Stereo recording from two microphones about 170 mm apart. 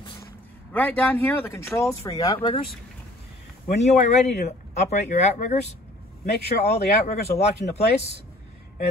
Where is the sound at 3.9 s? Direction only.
40° left (ahead or behind).